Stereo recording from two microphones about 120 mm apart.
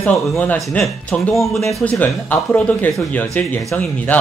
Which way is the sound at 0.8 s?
Centre (ahead or behind).